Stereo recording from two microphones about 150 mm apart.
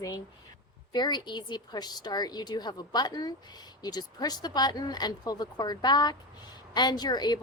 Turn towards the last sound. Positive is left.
turn(degrees=25)  # may be behind; listen again after turning